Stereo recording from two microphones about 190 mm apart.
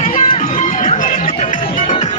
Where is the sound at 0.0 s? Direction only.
45° left (ahead or behind).